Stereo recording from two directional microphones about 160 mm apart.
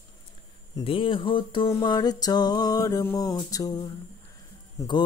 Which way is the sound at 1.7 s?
25° left (ahead or behind).